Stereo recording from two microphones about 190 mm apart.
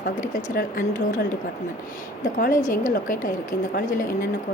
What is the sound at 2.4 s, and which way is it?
Speech, 45° left (ahead or behind).